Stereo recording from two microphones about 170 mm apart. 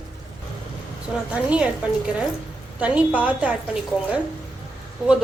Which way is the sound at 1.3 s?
10° right (ahead or behind).